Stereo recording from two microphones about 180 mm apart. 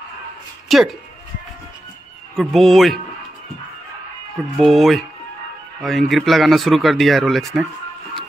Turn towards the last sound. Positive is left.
turn(degrees=0)  # may be behind; listen again after turning